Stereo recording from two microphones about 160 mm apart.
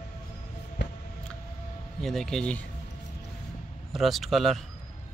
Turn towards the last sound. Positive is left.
turn(degrees=0)  # may be behind; listen again after turning